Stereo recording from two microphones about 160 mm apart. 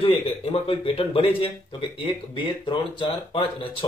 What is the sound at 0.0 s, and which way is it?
A man's voice, 35° left (ahead or behind).